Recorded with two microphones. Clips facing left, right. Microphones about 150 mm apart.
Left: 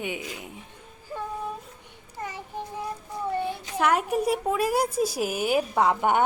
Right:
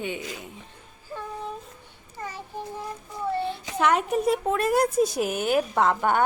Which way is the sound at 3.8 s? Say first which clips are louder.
Right 1 dB; 5° left (ahead or behind).